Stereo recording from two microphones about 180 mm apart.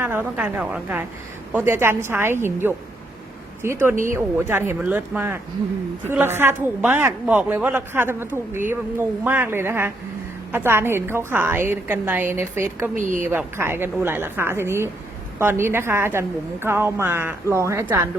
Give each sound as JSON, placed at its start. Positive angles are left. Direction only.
{"t": 0.0, "sound": "a woman's voice", "side_deg": -10}
{"t": 13.0, "sound": "a woman's voice", "side_deg": -45}
{"t": 13.3, "sound": "a woman's voice", "side_deg": -15}